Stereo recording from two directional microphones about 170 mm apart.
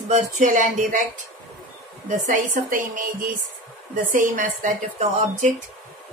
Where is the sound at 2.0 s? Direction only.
45° right (ahead or behind).